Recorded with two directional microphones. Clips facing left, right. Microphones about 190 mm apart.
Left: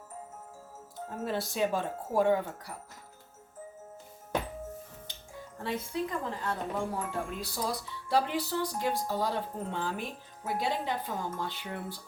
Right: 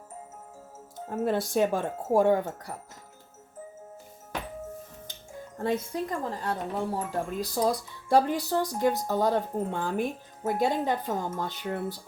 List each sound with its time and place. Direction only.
1.2 s speech: 50° right (ahead or behind)
5.5 s speech: 45° right (ahead or behind)